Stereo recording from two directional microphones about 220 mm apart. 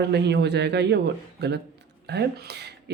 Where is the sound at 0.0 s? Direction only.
50° right (ahead or behind).